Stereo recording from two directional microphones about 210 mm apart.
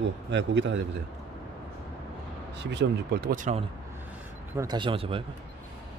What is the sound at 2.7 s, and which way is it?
Speech, 55° right (ahead or behind).